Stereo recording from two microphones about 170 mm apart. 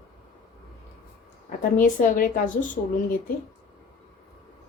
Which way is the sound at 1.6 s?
50° left (ahead or behind).